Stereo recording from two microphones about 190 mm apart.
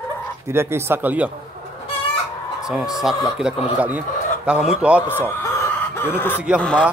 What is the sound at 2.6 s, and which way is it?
Speech, centre (ahead or behind).